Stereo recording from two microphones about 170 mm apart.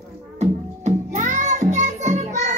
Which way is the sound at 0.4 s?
45° right (ahead or behind).